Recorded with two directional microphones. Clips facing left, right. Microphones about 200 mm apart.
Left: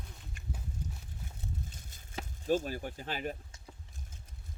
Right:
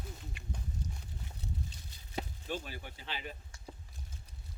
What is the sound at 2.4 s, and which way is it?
Speech, 45° left (ahead or behind).